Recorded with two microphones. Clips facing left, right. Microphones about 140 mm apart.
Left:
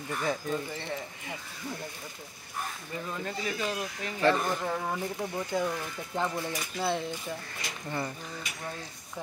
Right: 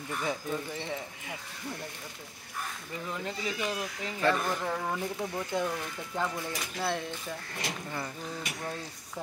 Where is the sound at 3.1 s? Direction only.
20° right (ahead or behind).